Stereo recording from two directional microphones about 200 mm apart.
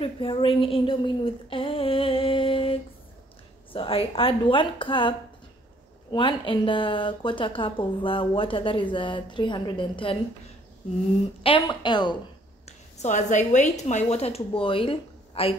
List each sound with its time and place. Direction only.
0.0 s speech: 25° left (ahead or behind)
6.1 s speech: 25° left (ahead or behind)
11.4 s speech: 25° left (ahead or behind)
12.6 s a woman's voice: 35° left (ahead or behind)